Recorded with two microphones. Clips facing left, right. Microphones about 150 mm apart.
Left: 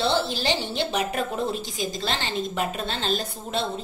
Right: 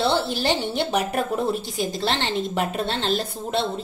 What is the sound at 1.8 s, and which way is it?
A woman's voice, 65° right (ahead or behind).